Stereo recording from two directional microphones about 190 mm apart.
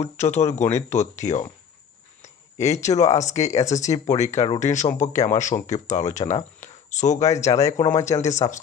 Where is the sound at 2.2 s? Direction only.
35° left (ahead or behind).